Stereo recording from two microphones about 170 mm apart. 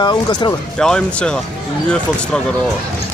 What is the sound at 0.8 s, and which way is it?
Speech, 5° left (ahead or behind).